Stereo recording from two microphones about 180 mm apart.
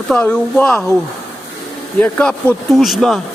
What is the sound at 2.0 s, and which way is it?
Speech, 10° left (ahead or behind).